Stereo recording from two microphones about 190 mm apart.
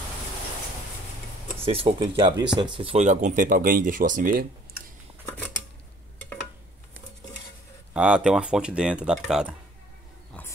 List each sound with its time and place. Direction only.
1.6 s speech: 30° right (ahead or behind); by 4.5 s 45° right (ahead or behind)
7.9 s speech: 5° right (ahead or behind)